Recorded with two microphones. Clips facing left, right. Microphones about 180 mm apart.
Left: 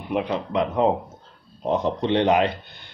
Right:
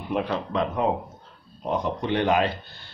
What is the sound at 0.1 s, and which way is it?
Speech, 15° left (ahead or behind).